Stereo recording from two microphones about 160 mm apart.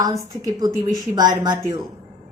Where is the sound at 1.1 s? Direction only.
25° right (ahead or behind).